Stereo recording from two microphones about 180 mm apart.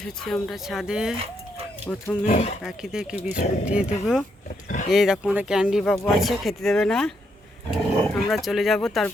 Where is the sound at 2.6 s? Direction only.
5° right (ahead or behind).